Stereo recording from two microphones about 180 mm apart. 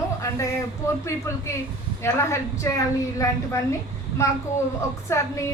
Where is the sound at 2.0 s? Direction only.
15° left (ahead or behind).